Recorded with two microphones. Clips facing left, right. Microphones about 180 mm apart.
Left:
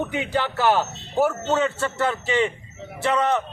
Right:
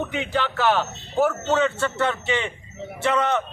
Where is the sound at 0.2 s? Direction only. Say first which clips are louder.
Even; 10° left (ahead or behind).